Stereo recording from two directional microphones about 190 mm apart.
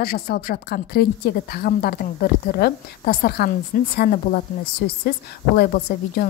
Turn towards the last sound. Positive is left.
turn(degrees=50)  # may be behind; listen again after turning